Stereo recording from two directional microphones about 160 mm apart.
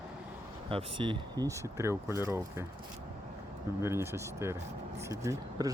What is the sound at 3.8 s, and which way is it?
Speech, 15° right (ahead or behind).